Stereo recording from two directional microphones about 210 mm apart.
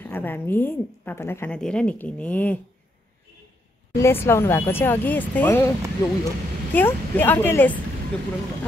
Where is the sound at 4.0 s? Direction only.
10° left (ahead or behind).